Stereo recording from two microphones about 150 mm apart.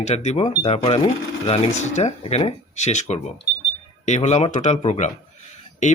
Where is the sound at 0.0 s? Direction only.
50° left (ahead or behind).